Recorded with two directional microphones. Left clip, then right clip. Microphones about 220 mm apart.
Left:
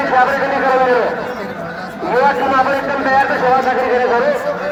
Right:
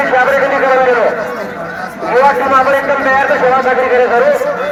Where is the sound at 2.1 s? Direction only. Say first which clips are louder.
Right 4 dB; 20° right (ahead or behind).